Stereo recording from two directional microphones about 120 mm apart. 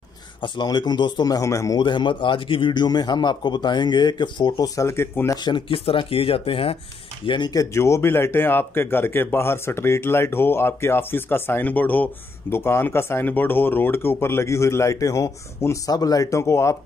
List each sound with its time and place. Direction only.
0.4 s a man's voice: 40° left (ahead or behind)
1.8 s a man's voice: 40° left (ahead or behind); by 5.4 s 20° left (ahead or behind)
5.4 s speech: 45° left (ahead or behind)
7.2 s a man's voice: 40° left (ahead or behind)
7.7 s speech: 25° left (ahead or behind)